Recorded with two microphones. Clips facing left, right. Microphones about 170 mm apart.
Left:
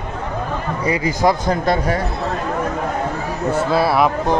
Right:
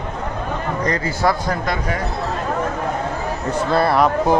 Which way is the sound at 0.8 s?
10° left (ahead or behind).